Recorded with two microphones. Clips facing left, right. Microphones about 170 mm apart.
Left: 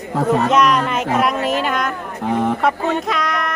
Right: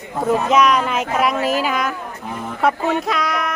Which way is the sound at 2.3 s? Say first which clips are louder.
Left 12 dB; 80° left.